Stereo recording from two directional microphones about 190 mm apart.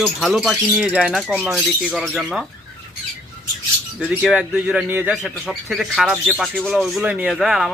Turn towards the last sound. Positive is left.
turn(degrees=0)  # may be behind; listen again after turning